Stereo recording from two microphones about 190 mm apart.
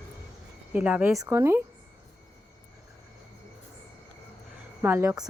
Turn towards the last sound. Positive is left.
turn(degrees=-15)  # may be behind; listen again after turning